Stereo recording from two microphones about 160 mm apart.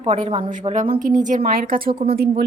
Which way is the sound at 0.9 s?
55° right (ahead or behind).